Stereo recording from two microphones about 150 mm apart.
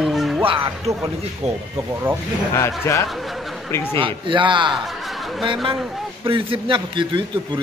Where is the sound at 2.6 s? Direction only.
20° left (ahead or behind).